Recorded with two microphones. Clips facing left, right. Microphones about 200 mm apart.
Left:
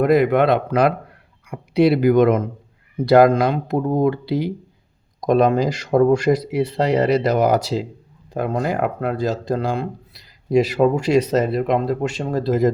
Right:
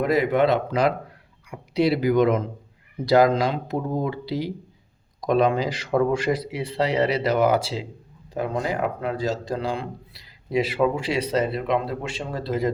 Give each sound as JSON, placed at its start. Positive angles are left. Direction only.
{"t": 0.0, "sound": "a man's voice", "side_deg": 55}